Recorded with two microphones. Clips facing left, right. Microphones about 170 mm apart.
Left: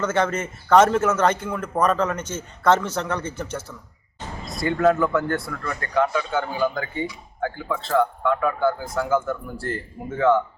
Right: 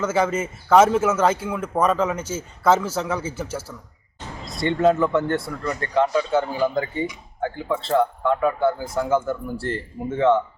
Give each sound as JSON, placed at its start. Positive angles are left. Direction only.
{"t": 0.0, "sound": "a man's voice", "side_deg": -5}
{"t": 4.4, "sound": "speech", "side_deg": -25}